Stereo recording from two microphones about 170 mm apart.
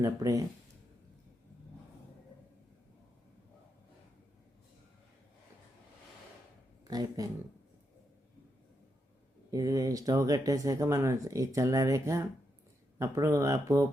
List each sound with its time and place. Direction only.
0.0 s speech: 20° right (ahead or behind)
6.8 s speech: 25° right (ahead or behind)
9.5 s speech: 20° right (ahead or behind)